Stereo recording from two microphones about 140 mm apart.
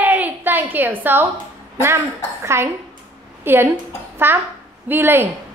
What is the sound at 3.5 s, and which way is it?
Child singing, 15° right (ahead or behind).